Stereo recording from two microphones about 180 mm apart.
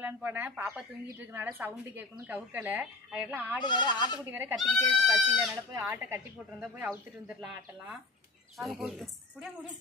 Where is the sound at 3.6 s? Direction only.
25° left (ahead or behind).